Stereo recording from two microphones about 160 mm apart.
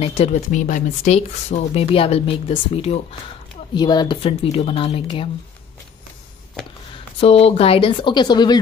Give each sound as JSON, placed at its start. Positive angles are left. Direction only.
{"t": 0.0, "sound": "speech", "side_deg": 45}
{"t": 3.7, "sound": "speech", "side_deg": 25}
{"t": 7.2, "sound": "speech", "side_deg": 40}